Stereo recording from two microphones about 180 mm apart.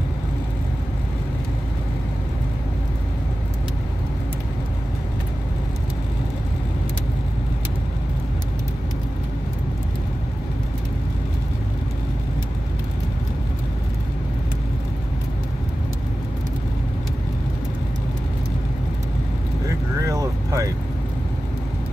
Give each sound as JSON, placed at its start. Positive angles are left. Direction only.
{"t": 20.1, "sound": "vehicle", "side_deg": -15}